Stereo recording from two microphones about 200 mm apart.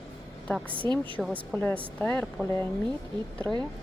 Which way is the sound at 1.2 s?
5° left (ahead or behind).